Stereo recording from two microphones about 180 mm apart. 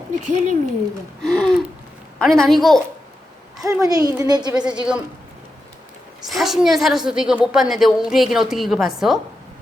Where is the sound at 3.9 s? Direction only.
20° right (ahead or behind).